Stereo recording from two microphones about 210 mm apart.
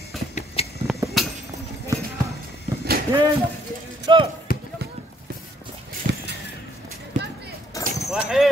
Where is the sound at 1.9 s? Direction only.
15° right (ahead or behind).